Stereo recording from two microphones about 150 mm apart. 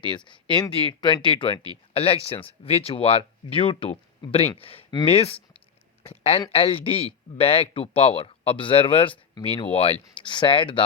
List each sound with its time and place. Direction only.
0.0 s speech: 30° left (ahead or behind)